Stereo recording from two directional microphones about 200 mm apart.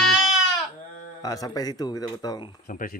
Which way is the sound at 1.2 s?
20° left (ahead or behind).